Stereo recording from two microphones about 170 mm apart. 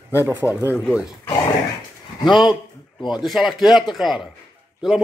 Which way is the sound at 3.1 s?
Centre (ahead or behind).